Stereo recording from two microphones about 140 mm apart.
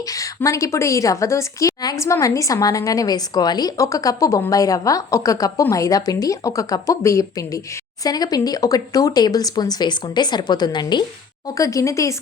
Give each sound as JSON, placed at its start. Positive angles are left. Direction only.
{"t": 0.1, "sound": "a woman's voice", "side_deg": 25}